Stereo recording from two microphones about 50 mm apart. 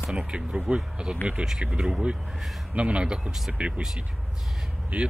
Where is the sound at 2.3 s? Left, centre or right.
Centre.